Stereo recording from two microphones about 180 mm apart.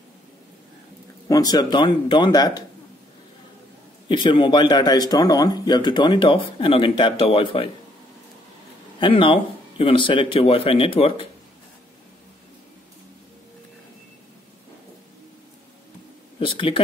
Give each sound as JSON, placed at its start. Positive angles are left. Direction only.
{"t": 1.3, "sound": "a man's voice", "side_deg": 20}
{"t": 4.1, "sound": "a man's voice", "side_deg": 25}
{"t": 9.0, "sound": "speech", "side_deg": 30}
{"t": 16.3, "sound": "speech", "side_deg": 30}